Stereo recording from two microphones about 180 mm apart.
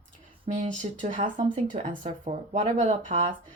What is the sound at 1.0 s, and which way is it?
Speech, 45° right (ahead or behind).